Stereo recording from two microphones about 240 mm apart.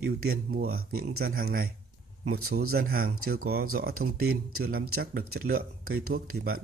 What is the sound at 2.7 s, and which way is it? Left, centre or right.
Speech, right.